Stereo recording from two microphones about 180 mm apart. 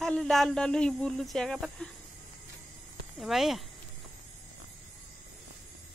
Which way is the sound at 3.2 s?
Centre (ahead or behind).